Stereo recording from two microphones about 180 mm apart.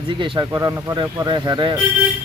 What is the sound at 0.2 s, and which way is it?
Speech, 25° right (ahead or behind).